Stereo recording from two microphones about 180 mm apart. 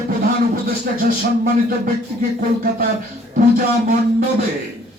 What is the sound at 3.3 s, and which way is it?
Speech, 50° right (ahead or behind).